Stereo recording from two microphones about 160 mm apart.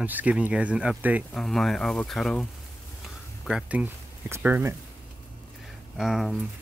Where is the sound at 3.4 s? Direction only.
5° right (ahead or behind).